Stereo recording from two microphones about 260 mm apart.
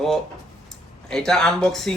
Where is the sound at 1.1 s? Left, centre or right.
Centre.